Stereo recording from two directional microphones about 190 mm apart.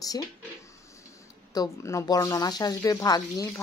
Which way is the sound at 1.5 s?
20° left (ahead or behind).